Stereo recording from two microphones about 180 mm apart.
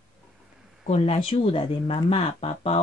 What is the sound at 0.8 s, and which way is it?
Speech, 35° left (ahead or behind).